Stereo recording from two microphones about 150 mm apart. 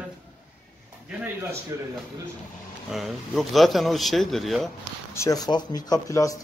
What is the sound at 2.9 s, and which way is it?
Speech, centre (ahead or behind).